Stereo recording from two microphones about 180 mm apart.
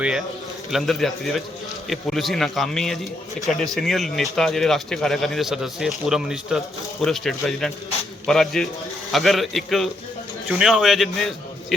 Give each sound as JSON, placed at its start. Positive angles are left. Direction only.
{"t": 0.7, "sound": "a man's voice", "side_deg": 0}